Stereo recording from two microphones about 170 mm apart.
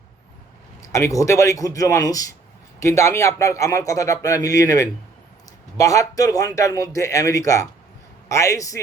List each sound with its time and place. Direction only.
0.8 s a man's voice: 20° left (ahead or behind)